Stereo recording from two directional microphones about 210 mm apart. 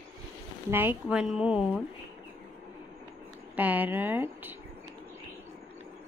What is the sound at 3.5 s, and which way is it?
Speech, 10° right (ahead or behind).